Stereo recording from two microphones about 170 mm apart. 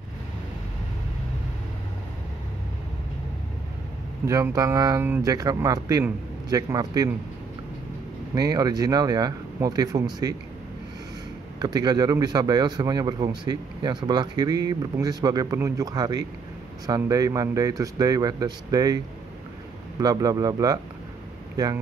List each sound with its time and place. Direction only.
4.3 s speech: 20° right (ahead or behind)
8.4 s speech: 20° right (ahead or behind)
11.6 s speech: 25° right (ahead or behind)
20.0 s speech: 20° right (ahead or behind)